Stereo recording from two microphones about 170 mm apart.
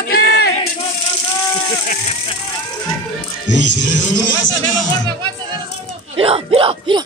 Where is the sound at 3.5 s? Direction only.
90° left.